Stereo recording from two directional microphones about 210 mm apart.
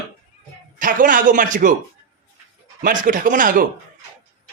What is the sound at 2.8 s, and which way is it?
Speech, 40° right (ahead or behind).